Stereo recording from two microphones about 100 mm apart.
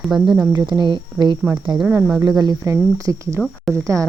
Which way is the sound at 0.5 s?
50° right (ahead or behind).